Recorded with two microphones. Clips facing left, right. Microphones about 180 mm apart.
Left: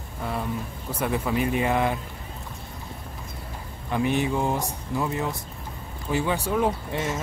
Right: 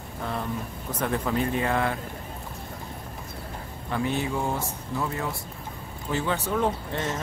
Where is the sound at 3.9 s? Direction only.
15° left (ahead or behind).